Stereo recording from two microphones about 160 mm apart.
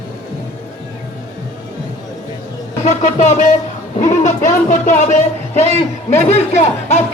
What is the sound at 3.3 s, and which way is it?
A man's voice, 45° left (ahead or behind).